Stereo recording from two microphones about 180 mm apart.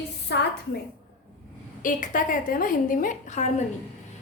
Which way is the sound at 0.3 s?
70° left (ahead or behind).